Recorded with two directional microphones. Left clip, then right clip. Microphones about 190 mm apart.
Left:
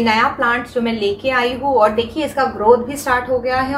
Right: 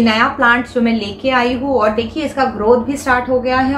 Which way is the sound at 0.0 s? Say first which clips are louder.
Right 2 dB; 5° right (ahead or behind).